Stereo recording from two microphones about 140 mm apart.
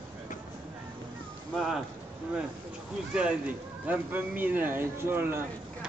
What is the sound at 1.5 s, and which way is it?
Speech, centre (ahead or behind).